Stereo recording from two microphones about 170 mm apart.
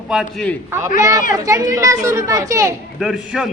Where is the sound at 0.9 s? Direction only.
20° right (ahead or behind).